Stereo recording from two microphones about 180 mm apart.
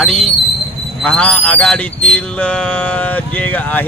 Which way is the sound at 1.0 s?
5° left (ahead or behind).